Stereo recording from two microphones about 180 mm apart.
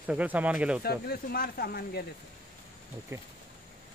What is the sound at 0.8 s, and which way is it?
Speech, 60° left (ahead or behind).